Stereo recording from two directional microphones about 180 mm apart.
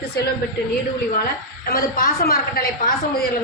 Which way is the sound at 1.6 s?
55° left (ahead or behind).